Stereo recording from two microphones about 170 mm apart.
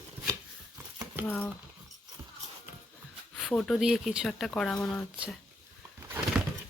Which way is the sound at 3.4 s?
5° left (ahead or behind).